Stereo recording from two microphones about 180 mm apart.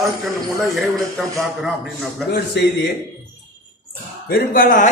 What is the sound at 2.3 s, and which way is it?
Speech, 60° left (ahead or behind).